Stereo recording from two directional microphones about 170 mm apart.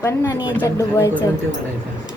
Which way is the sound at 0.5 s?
20° left (ahead or behind).